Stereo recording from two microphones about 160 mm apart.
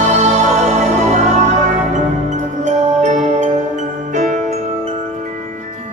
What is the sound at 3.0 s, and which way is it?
Music, 50° right (ahead or behind).